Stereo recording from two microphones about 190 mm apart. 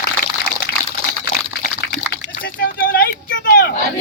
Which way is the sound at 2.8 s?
50° left (ahead or behind).